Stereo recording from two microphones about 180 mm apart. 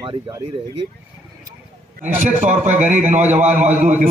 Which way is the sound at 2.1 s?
45° right (ahead or behind).